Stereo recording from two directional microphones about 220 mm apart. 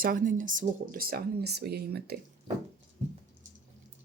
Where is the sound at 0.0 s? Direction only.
40° right (ahead or behind).